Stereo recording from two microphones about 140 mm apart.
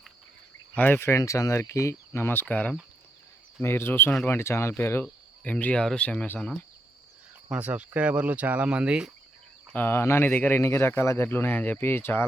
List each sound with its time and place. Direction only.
0.8 s speech: 15° left (ahead or behind)
7.5 s speech: 10° right (ahead or behind)
9.7 s speech: 15° left (ahead or behind)